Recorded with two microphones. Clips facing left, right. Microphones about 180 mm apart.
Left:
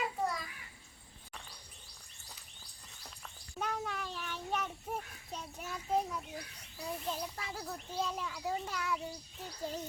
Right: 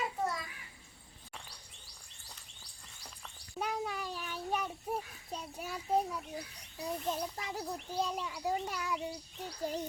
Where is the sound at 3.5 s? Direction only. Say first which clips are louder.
Right 2 dB; 10° right (ahead or behind).